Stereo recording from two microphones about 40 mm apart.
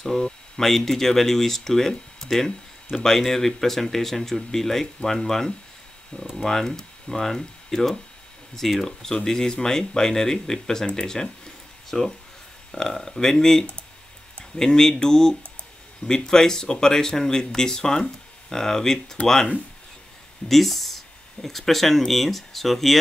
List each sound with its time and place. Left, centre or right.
0.0 s speech: centre
8.8 s speech: centre
11.9 s speech: centre